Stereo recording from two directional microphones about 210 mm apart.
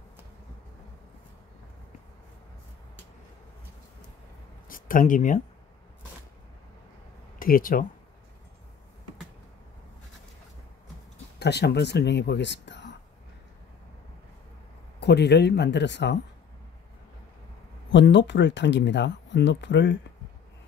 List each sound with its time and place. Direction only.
4.6 s speech: 40° left (ahead or behind)
7.3 s speech: 40° left (ahead or behind)
11.3 s speech: 50° left (ahead or behind)
15.0 s speech: 50° left (ahead or behind)
17.9 s speech: 60° left (ahead or behind)